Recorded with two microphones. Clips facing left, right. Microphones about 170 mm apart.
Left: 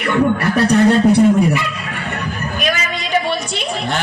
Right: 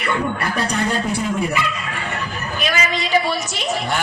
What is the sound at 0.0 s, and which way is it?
Speech, 60° left (ahead or behind).